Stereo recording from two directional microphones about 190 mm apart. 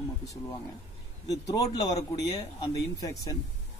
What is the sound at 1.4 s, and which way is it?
A man's voice, 20° left (ahead or behind).